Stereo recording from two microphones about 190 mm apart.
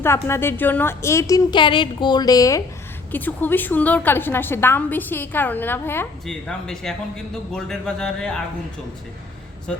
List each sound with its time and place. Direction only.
0.0 s a woman's voice: 15° left (ahead or behind)